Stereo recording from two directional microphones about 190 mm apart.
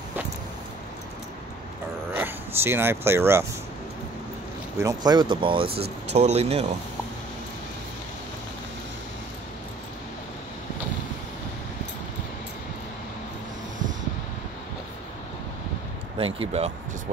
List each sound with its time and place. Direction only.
2.1 s speech: 10° right (ahead or behind)
4.7 s speech: 20° right (ahead or behind); by 6.6 s 35° right (ahead or behind)
16.3 s speech: 35° right (ahead or behind)